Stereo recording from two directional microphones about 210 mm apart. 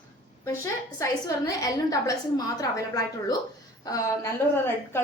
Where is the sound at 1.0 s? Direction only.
15° left (ahead or behind).